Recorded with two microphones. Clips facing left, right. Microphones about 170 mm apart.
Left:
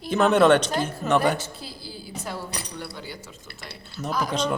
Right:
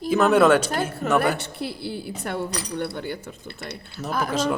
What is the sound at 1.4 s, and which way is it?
A woman's voice, 65° right (ahead or behind).